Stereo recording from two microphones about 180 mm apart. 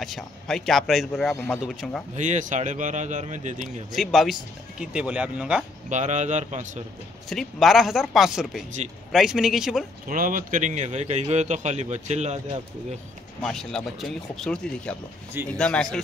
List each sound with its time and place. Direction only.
0.0 s speech: centre (ahead or behind)
1.3 s speech: 10° left (ahead or behind)
1.6 s speech: centre (ahead or behind)
2.1 s speech: 45° right (ahead or behind)
3.9 s speech: centre (ahead or behind)
5.9 s a man's voice: 40° right (ahead or behind)
7.2 s speech: centre (ahead or behind)
10.0 s a man's voice: 50° right (ahead or behind)
13.4 s speech: centre (ahead or behind)